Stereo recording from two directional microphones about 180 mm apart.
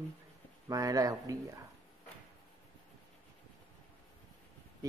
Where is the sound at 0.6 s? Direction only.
20° right (ahead or behind).